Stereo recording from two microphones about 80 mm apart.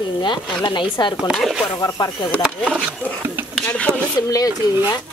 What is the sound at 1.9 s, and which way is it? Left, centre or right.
Speech, left.